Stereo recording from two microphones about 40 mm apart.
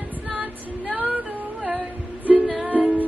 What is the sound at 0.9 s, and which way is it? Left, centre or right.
Music, right.